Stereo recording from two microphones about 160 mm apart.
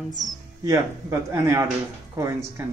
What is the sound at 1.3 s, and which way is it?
Speech, 20° right (ahead or behind).